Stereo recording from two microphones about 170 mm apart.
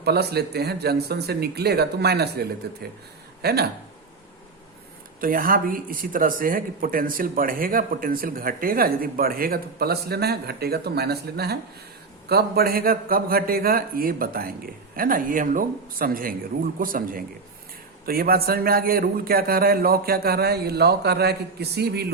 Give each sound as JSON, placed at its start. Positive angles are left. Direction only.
{"t": 0.0, "sound": "speech", "side_deg": -70}
{"t": 5.2, "sound": "speech", "side_deg": -55}